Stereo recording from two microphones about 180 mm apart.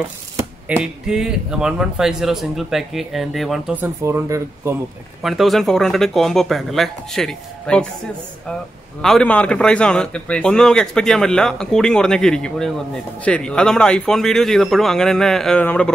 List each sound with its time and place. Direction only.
0.4 s a man's voice: 10° right (ahead or behind)
3.8 s speech: 15° right (ahead or behind)
5.2 s a man's voice: centre (ahead or behind)
9.0 s a man's voice: 5° left (ahead or behind)